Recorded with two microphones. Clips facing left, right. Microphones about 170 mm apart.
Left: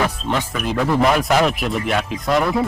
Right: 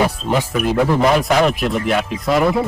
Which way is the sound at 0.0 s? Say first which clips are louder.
Right 3 dB; 10° right (ahead or behind).